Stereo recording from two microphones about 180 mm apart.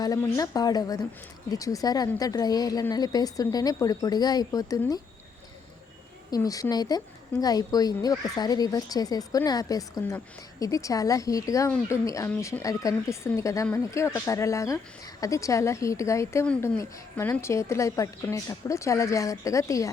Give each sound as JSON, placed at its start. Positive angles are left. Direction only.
{"t": 0.0, "sound": "speech", "side_deg": 20}
{"t": 6.3, "sound": "a woman's voice", "side_deg": 20}